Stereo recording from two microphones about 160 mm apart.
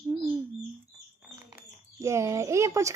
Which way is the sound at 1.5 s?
20° right (ahead or behind).